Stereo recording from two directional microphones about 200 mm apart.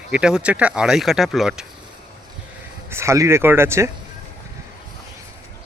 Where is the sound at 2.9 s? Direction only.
15° right (ahead or behind).